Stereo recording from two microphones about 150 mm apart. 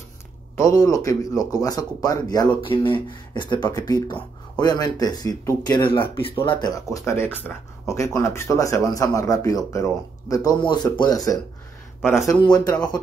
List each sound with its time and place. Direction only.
0.6 s speech: 20° left (ahead or behind)
6.1 s speech: 35° left (ahead or behind)
6.6 s speech: 25° left (ahead or behind)